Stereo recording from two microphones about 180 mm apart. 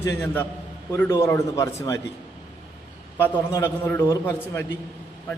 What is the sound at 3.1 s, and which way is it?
A man's voice, 15° left (ahead or behind).